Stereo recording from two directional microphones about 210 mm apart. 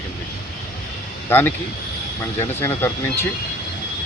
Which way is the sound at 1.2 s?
10° left (ahead or behind).